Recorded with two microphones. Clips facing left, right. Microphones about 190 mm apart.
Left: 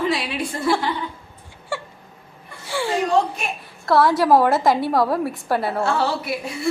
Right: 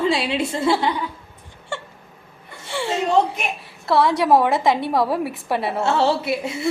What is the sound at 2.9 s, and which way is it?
Speech, 25° right (ahead or behind).